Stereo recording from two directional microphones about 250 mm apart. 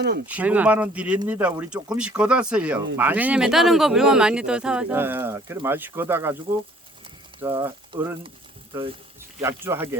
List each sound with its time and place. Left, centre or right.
0.3 s speech: centre
7.4 s speech: centre